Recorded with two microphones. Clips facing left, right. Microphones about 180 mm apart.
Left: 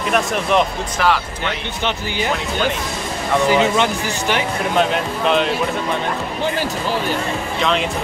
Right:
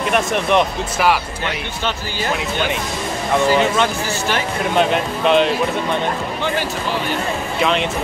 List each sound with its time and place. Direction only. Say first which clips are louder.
0.1 s speech: even; centre (ahead or behind)
3.4 s speech: left 1 dB; 15° left (ahead or behind)
4.7 s speech: right 1 dB; centre (ahead or behind)